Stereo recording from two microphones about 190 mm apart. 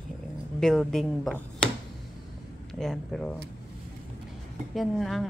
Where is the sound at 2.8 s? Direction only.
Centre (ahead or behind).